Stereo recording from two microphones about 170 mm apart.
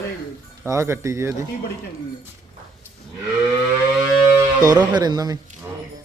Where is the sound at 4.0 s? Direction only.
20° right (ahead or behind).